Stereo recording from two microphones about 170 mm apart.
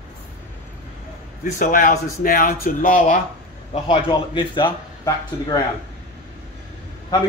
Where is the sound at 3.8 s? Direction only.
30° left (ahead or behind).